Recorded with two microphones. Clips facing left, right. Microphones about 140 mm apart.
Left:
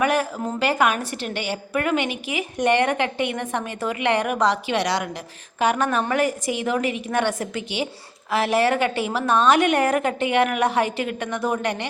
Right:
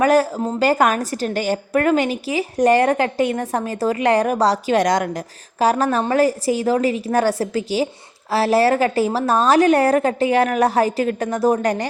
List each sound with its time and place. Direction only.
0.0 s a woman's voice: 35° right (ahead or behind)
5.5 s a woman's voice: 35° right (ahead or behind)